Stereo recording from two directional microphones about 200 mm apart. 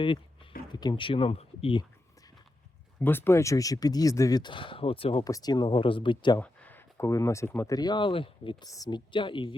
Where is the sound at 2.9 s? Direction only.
10° left (ahead or behind).